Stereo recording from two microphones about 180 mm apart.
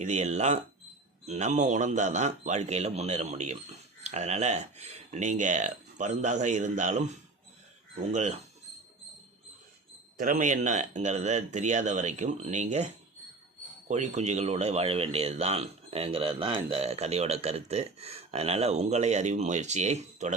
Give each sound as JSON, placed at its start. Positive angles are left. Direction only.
{"t": 0.0, "sound": "speech", "side_deg": -40}
{"t": 10.2, "sound": "speech", "side_deg": -50}